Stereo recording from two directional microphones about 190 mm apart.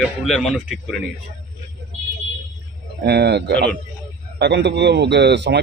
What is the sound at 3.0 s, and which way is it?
Speech, 60° right (ahead or behind).